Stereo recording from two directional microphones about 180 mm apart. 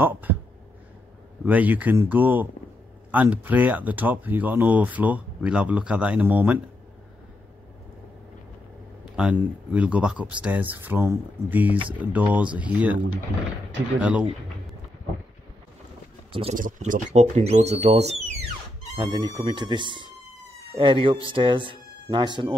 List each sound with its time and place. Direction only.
0.0 s speech: 10° right (ahead or behind)
1.4 s speech: 10° right (ahead or behind)
9.1 s speech: 5° right (ahead or behind)
16.3 s speech: 30° right (ahead or behind)
16.5 s speech: 50° right (ahead or behind)
18.9 s speech: 25° right (ahead or behind)